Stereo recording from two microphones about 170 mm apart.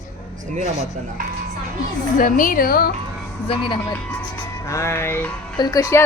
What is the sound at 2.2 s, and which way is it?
Speech, 50° left (ahead or behind).